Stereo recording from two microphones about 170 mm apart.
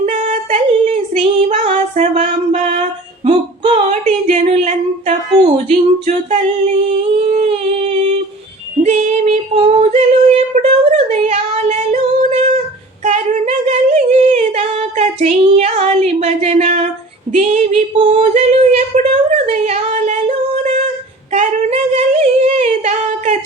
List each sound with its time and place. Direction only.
0.0 s female singing: 45° right (ahead or behind)
3.8 s singing: 40° right (ahead or behind)
5.5 s humming: 45° right (ahead or behind)
8.8 s female singing: 40° right (ahead or behind)
13.1 s a sound: 40° right (ahead or behind)
17.3 s female singing: 40° right (ahead or behind)
17.9 s yodeling: 30° right (ahead or behind)
18.2 s a sound: 40° right (ahead or behind)
21.3 s singing: 40° right (ahead or behind)